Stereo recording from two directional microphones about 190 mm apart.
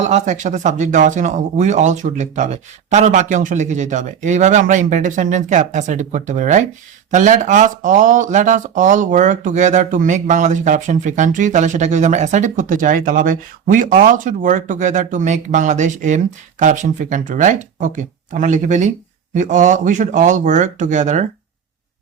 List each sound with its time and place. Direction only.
0.0 s speech: 40° right (ahead or behind)